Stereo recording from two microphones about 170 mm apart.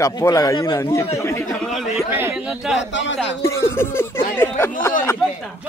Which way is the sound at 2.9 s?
90° left.